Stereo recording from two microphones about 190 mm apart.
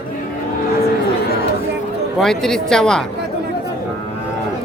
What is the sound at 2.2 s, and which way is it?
Speech, 5° left (ahead or behind).